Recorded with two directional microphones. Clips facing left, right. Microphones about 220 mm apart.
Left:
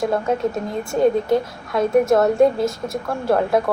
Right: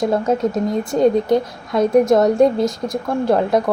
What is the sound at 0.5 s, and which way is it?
A woman's voice, 15° right (ahead or behind).